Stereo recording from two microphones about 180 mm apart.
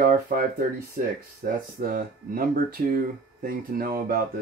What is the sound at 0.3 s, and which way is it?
Speech, 50° right (ahead or behind).